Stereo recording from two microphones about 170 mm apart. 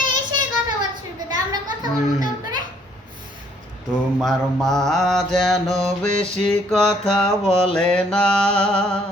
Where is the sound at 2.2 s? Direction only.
25° right (ahead or behind).